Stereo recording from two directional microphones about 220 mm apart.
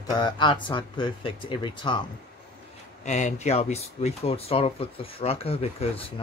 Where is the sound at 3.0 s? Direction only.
30° left (ahead or behind).